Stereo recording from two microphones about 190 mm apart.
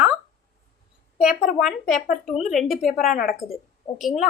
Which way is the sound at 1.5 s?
Centre (ahead or behind).